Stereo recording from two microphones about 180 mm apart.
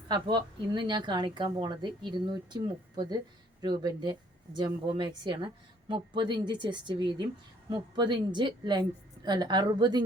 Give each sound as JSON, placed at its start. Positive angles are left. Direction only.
{"t": 0.1, "sound": "a woman's voice", "side_deg": -25}